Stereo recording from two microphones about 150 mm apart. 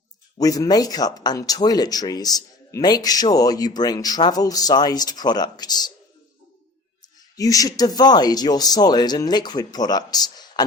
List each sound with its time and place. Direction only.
0.3 s speech: 25° left (ahead or behind)
7.0 s speech: 25° left (ahead or behind)